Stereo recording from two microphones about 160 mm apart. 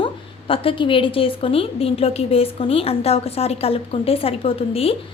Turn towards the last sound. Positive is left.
turn(degrees=35)  # may be behind; listen again after turning